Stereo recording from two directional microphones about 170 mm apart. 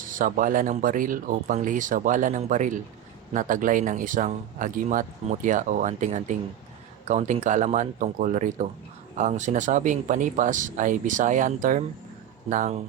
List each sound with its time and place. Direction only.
0.1 s speech: 50° right (ahead or behind)